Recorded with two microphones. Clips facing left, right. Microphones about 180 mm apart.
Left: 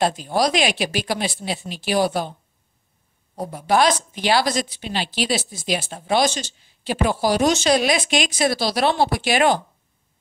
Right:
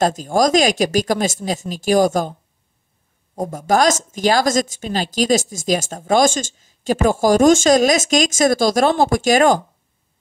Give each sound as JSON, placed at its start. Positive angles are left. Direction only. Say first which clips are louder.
{"t": 0.0, "sound": "speech", "louder": "right 4 dB", "side_deg": -45}
{"t": 3.3, "sound": "speech", "louder": "right 2 dB", "side_deg": -45}